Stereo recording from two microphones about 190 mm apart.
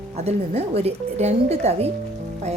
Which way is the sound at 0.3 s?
35° right (ahead or behind).